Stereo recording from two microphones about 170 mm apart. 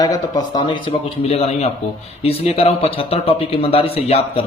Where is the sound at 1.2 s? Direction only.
35° left (ahead or behind).